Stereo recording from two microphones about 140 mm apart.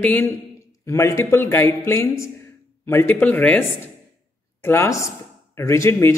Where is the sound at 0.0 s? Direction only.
10° left (ahead or behind).